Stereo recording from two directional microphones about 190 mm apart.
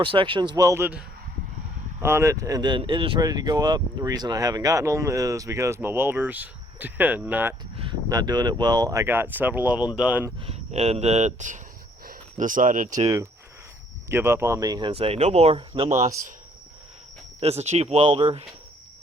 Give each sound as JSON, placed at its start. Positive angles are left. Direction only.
{"t": 0.0, "sound": "speech", "side_deg": -25}
{"t": 7.8, "sound": "speech", "side_deg": -25}
{"t": 10.4, "sound": "speech", "side_deg": -35}
{"t": 14.1, "sound": "speech", "side_deg": -15}
{"t": 17.4, "sound": "speech", "side_deg": -35}